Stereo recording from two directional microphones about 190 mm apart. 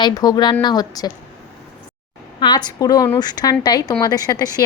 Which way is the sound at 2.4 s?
25° left (ahead or behind).